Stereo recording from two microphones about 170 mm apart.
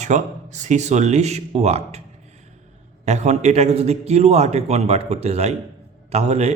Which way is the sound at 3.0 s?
40° right (ahead or behind).